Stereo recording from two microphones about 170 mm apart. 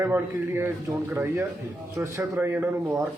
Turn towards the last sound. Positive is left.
turn(degrees=-15)  # may be behind; listen again after turning